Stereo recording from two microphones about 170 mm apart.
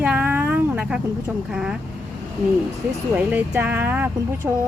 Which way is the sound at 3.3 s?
10° right (ahead or behind).